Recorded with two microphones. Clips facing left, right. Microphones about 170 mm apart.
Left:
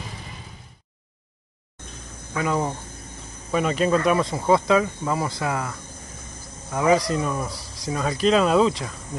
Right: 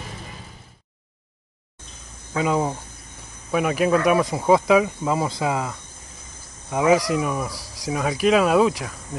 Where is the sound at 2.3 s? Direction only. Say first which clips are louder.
Right 2 dB; 15° right (ahead or behind).